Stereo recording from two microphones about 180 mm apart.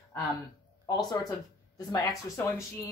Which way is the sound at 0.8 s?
20° left (ahead or behind).